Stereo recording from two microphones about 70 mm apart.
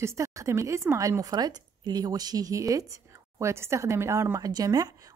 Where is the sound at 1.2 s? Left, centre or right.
Right.